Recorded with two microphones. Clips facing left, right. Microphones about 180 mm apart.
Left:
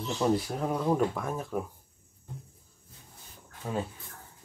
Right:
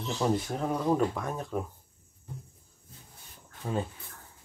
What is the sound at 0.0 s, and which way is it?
Speech, centre (ahead or behind).